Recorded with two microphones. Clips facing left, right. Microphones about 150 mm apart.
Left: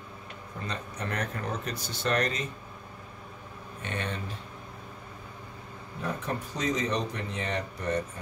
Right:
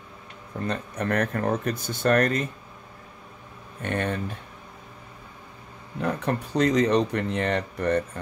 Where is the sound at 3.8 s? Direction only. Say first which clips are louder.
Right 8 dB; 55° right (ahead or behind).